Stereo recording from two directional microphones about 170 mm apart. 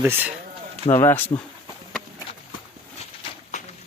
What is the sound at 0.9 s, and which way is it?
Speech, 15° left (ahead or behind).